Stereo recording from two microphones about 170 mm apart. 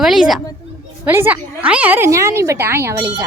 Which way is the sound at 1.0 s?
10° right (ahead or behind).